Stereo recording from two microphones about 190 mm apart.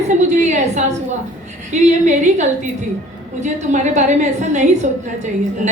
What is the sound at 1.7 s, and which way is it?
Speech, 40° right (ahead or behind).